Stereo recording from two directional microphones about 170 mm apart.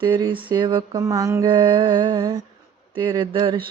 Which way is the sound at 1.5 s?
30° right (ahead or behind).